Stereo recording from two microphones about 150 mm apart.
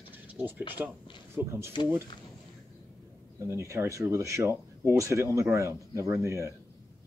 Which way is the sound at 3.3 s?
20° right (ahead or behind).